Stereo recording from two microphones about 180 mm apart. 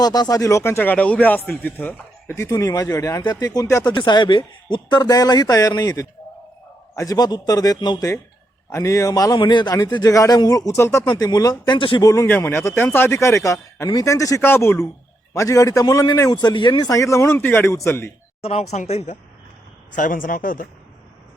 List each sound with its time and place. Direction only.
0.0 s a man's voice: 20° left (ahead or behind)
18.4 s speech: 40° left (ahead or behind)